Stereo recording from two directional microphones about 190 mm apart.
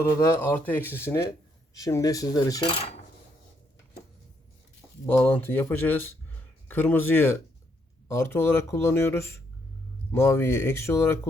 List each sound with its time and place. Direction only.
0.0 s speech: 15° left (ahead or behind)
5.0 s speech: 10° left (ahead or behind)